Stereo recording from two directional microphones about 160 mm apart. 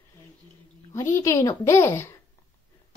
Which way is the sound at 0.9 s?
20° left (ahead or behind).